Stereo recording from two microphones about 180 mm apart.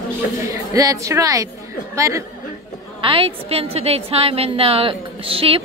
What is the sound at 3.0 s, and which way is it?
A woman's voice, 30° right (ahead or behind).